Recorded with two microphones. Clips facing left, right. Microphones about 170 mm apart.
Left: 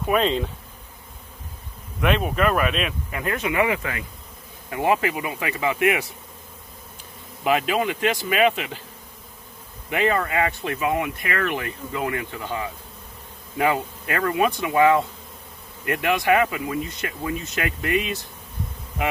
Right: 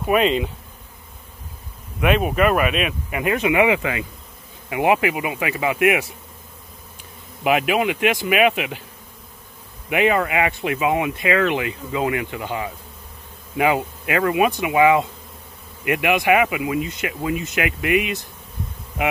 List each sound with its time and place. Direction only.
0.0 s speech: 5° right (ahead or behind)
2.0 s speech: 5° right (ahead or behind)
7.4 s speech: 10° right (ahead or behind)
9.8 s speech: 10° right (ahead or behind)
11.2 s speech: 90° right
12.2 s speech: 10° right (ahead or behind)